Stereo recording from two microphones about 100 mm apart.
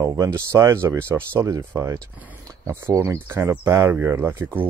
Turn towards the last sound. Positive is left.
turn(degrees=-25)  # may be behind; listen again after turning